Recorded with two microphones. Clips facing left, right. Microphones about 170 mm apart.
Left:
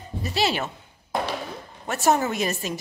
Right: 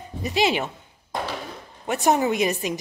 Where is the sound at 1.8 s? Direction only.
15° right (ahead or behind).